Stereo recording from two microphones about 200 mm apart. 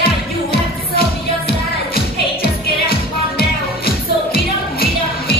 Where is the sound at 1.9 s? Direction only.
50° left (ahead or behind).